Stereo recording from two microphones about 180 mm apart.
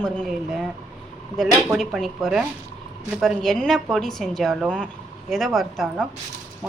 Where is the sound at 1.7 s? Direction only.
Centre (ahead or behind).